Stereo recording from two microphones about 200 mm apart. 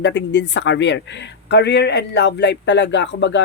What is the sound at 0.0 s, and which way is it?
Speech, 65° left (ahead or behind).